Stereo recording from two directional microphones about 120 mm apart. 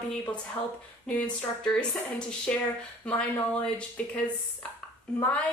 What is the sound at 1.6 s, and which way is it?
A woman's voice, 5° left (ahead or behind).